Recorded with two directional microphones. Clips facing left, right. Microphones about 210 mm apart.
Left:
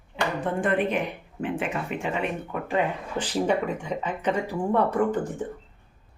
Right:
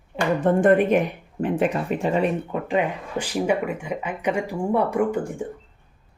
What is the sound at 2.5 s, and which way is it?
Speech, 20° right (ahead or behind).